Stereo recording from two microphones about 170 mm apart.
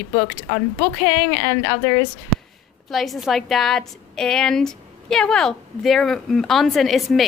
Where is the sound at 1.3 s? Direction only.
15° left (ahead or behind).